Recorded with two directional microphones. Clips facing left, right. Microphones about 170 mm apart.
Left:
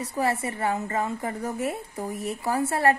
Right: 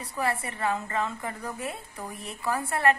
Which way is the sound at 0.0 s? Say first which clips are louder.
Left 4 dB; 25° left (ahead or behind).